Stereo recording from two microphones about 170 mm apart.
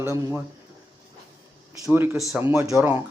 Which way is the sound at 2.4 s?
15° right (ahead or behind).